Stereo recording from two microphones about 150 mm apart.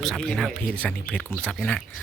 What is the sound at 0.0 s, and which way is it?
Speech, 5° left (ahead or behind).